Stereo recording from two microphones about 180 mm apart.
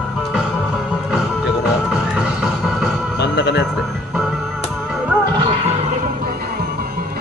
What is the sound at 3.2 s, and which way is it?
Music, 70° left (ahead or behind).